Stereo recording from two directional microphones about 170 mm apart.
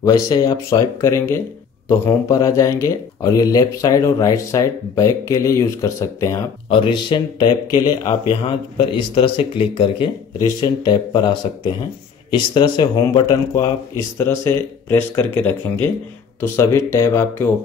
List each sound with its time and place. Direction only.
0.0 s speech: 20° left (ahead or behind)